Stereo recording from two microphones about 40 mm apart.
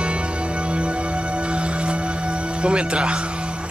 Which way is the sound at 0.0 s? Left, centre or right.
Right.